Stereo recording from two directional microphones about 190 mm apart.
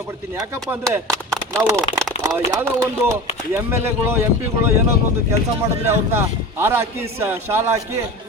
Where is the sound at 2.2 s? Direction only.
15° right (ahead or behind).